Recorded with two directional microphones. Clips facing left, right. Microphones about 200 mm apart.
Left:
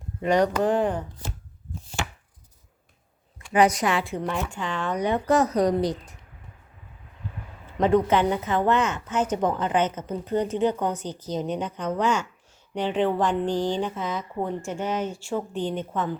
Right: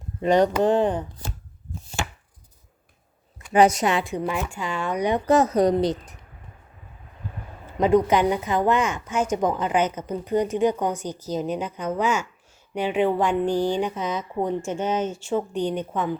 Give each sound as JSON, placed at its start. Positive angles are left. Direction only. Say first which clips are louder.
{"t": 0.2, "sound": "speech", "louder": "right 3 dB", "side_deg": -25}
{"t": 3.3, "sound": "a woman's voice", "louder": "right 3 dB", "side_deg": -25}
{"t": 7.8, "sound": "a woman's voice", "louder": "right 2 dB", "side_deg": -10}